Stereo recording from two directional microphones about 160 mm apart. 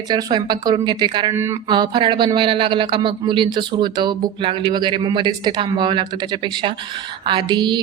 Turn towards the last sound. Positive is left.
turn(degrees=-30)  # may be behind; listen again after turning